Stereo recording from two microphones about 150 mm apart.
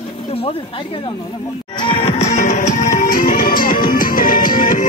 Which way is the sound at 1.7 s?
40° left (ahead or behind).